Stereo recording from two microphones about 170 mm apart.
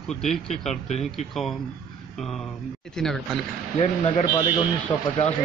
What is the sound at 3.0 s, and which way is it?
Speech, centre (ahead or behind).